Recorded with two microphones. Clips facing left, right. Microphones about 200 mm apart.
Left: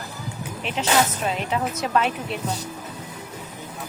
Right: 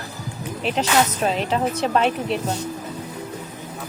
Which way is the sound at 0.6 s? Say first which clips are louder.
Right 2 dB; 35° right (ahead or behind).